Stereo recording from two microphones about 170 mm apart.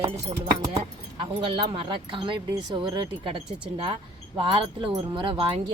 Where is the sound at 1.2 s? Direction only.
30° right (ahead or behind).